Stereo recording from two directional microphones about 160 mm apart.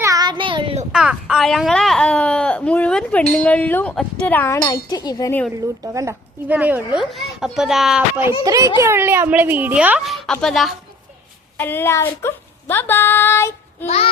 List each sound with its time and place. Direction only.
0.0 s child singing: 20° right (ahead or behind)
0.9 s speech: 5° right (ahead or behind); by 5.3 s 25° left (ahead or behind)
5.5 s speech: 20° right (ahead or behind)
6.5 s speech: 10° right (ahead or behind)
8.4 s speech: 20° right (ahead or behind); by 10.8 s centre (ahead or behind)
11.5 s speech: 15° left (ahead or behind)
13.8 s child singing: 40° left (ahead or behind)